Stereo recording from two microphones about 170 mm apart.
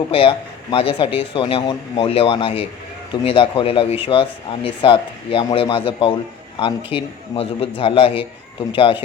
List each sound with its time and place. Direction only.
0.1 s speech: 30° left (ahead or behind)